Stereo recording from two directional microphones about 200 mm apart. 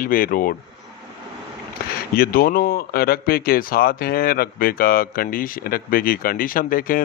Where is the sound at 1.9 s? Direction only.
50° left (ahead or behind).